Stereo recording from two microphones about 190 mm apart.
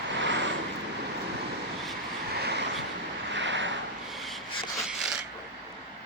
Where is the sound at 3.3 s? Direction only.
70° right (ahead or behind).